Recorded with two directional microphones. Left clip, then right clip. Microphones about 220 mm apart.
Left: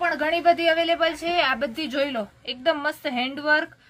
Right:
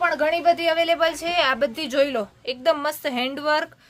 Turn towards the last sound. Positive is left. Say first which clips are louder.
# even
turn(degrees=-55)  # may be behind; listen again after turning